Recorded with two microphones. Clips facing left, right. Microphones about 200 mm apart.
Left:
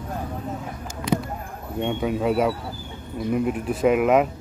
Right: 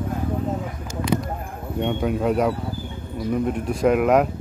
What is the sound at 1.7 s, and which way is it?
Speech, centre (ahead or behind).